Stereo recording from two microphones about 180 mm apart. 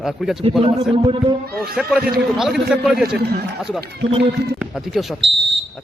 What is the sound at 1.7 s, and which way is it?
A man's voice, 5° right (ahead or behind).